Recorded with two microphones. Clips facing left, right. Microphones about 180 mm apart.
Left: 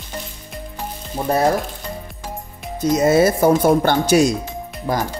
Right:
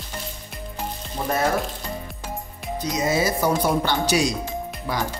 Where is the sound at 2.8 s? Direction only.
50° left (ahead or behind).